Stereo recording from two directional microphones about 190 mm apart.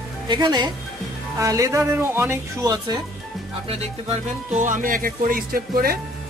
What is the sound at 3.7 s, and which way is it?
Speech, 35° right (ahead or behind).